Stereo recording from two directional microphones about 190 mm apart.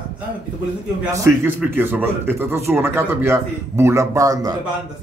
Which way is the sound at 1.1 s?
15° right (ahead or behind).